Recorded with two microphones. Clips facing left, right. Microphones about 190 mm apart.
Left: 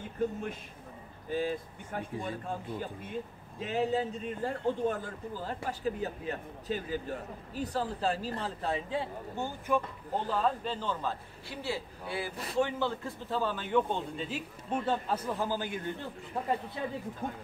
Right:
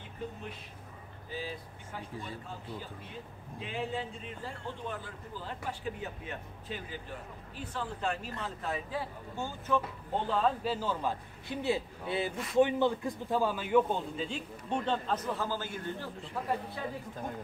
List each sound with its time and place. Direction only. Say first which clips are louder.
0.2 s a man's voice: left 8 dB; 45° left (ahead or behind); by 9.8 s 15° left (ahead or behind)
10.1 s a man's voice: even; centre (ahead or behind); by 16.1 s 15° left (ahead or behind)
16.3 s speech: left 3 dB; 25° left (ahead or behind)